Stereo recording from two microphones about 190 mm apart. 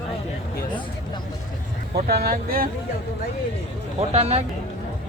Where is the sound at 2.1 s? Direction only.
55° right (ahead or behind).